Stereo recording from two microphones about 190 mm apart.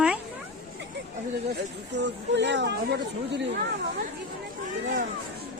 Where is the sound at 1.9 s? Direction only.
65° right (ahead or behind).